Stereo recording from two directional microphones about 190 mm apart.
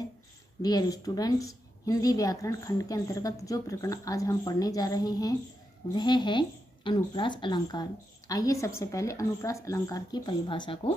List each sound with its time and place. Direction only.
0.6 s a woman's voice: 20° left (ahead or behind)